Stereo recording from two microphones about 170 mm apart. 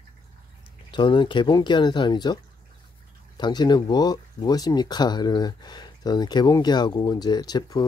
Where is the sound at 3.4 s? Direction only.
25° left (ahead or behind).